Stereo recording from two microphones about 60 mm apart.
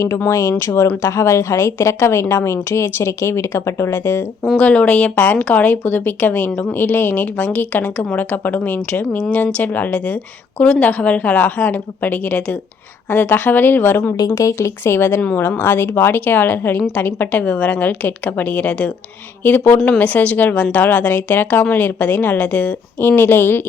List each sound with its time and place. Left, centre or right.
0.3 s speech: left
0.6 s a woman's voice: left
4.5 s a woman's voice: left
14.3 s speech: left
14.8 s a woman's voice: left